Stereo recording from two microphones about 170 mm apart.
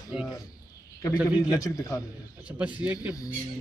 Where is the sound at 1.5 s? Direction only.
20° left (ahead or behind).